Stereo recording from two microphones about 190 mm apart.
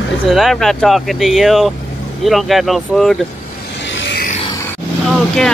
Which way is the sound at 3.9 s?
70° left (ahead or behind).